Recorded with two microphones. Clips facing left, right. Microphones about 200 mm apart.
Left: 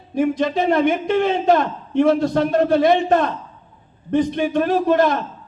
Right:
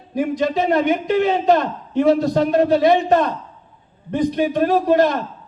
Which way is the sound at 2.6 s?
50° left (ahead or behind).